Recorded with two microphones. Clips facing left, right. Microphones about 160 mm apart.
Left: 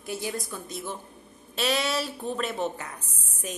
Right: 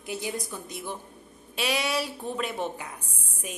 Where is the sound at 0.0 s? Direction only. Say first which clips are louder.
Even; 15° right (ahead or behind).